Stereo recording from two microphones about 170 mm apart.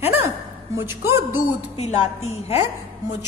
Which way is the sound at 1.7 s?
40° left (ahead or behind).